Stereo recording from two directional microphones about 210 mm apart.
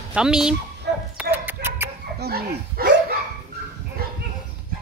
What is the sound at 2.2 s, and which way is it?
Dog, 45° right (ahead or behind).